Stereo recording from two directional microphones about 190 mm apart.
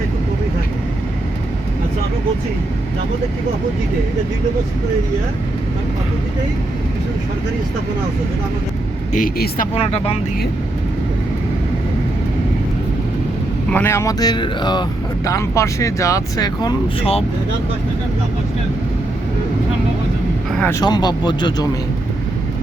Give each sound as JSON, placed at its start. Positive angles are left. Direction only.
{"t": 9.1, "sound": "speech", "side_deg": 45}
{"t": 9.7, "sound": "speech", "side_deg": 30}
{"t": 13.7, "sound": "speech", "side_deg": 10}
{"t": 20.6, "sound": "speech", "side_deg": 15}